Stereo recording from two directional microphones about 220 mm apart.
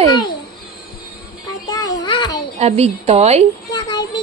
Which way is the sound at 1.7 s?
20° left (ahead or behind).